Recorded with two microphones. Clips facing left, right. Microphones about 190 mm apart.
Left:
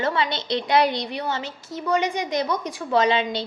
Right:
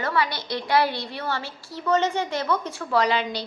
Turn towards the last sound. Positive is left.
turn(degrees=25)  # may be behind; listen again after turning